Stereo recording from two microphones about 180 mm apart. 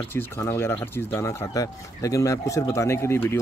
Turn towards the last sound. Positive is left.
turn(degrees=15)  # may be behind; listen again after turning